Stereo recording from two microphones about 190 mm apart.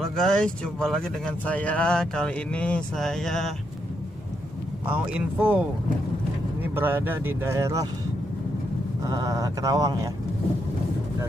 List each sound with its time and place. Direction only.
0.0 s speech: centre (ahead or behind)
4.8 s speech: 10° right (ahead or behind)
6.6 s speech: 10° right (ahead or behind)
9.0 s speech: 15° right (ahead or behind)